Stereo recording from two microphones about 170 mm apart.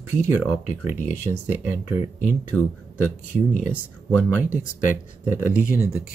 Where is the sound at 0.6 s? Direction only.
45° left (ahead or behind).